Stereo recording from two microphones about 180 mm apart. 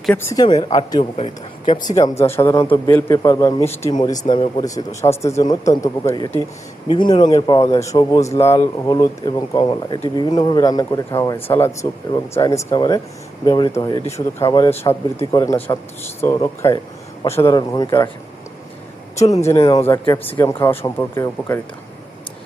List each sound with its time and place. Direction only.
0.0 s a man's voice: 10° left (ahead or behind)
1.1 s a man's voice: 35° left (ahead or behind)
1.8 s a man's voice: 20° left (ahead or behind)
14.7 s a man's voice: 35° left (ahead or behind)
15.3 s a man's voice: 20° left (ahead or behind)
19.1 s a man's voice: 15° left (ahead or behind)
20.2 s a man's voice: 15° left (ahead or behind)